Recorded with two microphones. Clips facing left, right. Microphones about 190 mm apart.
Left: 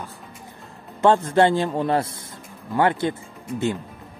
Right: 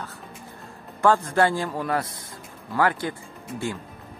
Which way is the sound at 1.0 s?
25° left (ahead or behind).